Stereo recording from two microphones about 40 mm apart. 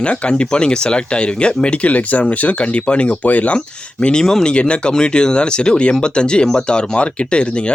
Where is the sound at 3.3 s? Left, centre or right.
Left.